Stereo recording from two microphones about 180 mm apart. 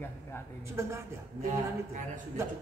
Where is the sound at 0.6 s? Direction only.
15° right (ahead or behind).